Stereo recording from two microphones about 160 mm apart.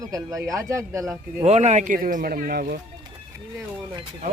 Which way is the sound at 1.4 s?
45° right (ahead or behind).